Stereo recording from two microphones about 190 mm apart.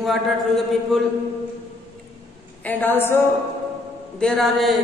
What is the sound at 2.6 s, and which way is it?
Speech, 10° left (ahead or behind).